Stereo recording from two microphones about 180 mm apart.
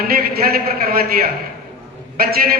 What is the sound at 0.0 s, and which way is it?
A man's voice, 55° right (ahead or behind).